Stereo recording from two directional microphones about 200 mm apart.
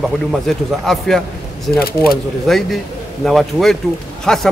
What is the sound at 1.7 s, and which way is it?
Speech, 50° left (ahead or behind).